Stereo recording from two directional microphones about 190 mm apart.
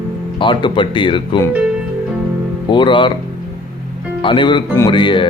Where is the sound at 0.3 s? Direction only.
25° left (ahead or behind).